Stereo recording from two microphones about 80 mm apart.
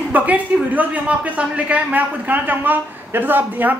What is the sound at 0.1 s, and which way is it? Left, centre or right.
A man's voice, centre.